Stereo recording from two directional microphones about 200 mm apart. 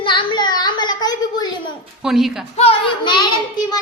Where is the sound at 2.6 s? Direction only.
25° left (ahead or behind).